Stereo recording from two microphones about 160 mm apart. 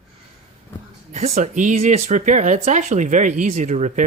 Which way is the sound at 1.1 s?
45° right (ahead or behind).